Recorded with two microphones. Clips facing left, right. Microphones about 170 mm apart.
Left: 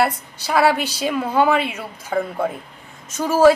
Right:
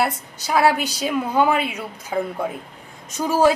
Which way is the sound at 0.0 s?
Centre (ahead or behind).